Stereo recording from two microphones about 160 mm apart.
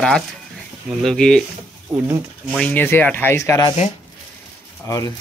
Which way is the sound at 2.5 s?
10° left (ahead or behind).